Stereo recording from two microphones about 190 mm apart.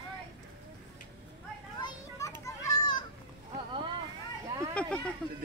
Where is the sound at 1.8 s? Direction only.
15° left (ahead or behind).